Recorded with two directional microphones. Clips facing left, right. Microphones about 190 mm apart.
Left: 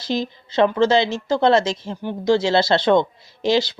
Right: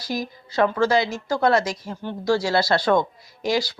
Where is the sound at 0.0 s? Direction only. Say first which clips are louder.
Left 4 dB; 25° left (ahead or behind).